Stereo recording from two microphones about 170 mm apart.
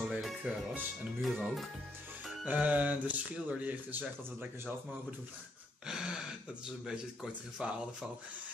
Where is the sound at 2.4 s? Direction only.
10° right (ahead or behind).